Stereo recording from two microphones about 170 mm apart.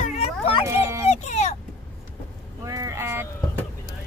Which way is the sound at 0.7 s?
15° right (ahead or behind).